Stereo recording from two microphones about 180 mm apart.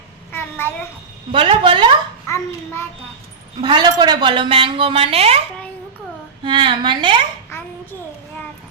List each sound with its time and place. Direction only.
0.3 s a sound: 10° left (ahead or behind)
1.3 s a woman's voice: 30° right (ahead or behind)
2.2 s a child's voice: 15° left (ahead or behind)
3.6 s a woman's voice: 25° right (ahead or behind)
6.4 s a woman's voice: 25° right (ahead or behind)
7.5 s child singing: 15° left (ahead or behind)